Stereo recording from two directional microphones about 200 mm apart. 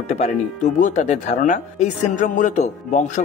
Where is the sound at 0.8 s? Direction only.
35° left (ahead or behind).